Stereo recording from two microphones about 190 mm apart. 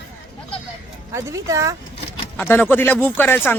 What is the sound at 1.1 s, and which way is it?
Speech, 15° right (ahead or behind).